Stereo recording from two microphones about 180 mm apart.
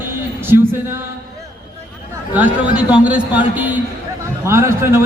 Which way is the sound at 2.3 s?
10° right (ahead or behind).